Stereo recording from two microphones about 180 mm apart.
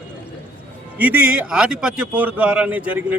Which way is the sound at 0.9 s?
10° right (ahead or behind).